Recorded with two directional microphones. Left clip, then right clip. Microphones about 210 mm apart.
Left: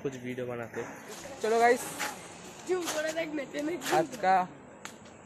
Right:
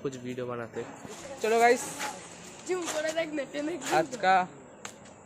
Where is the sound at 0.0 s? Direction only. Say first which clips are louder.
Right 1 dB; 10° right (ahead or behind).